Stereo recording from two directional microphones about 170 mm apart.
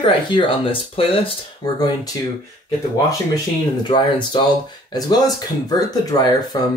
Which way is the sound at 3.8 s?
25° left (ahead or behind).